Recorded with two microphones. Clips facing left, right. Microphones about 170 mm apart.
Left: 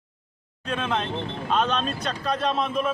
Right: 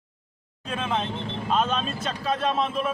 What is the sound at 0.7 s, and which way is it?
A man's voice, 5° right (ahead or behind).